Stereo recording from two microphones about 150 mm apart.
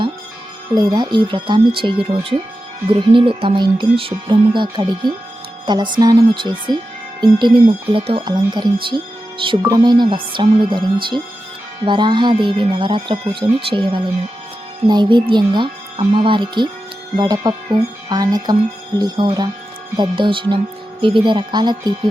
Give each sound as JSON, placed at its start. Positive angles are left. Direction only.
{"t": 0.8, "sound": "speech", "side_deg": -25}